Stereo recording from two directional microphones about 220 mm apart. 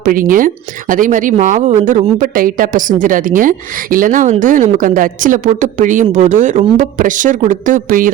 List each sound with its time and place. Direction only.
0.0 s speech: 40° right (ahead or behind)